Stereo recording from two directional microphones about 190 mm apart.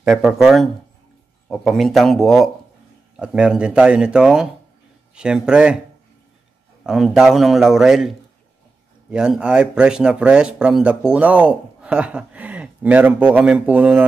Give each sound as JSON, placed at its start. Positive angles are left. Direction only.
{"t": 0.0, "sound": "a man's voice", "side_deg": 0}
{"t": 6.8, "sound": "a man's voice", "side_deg": -5}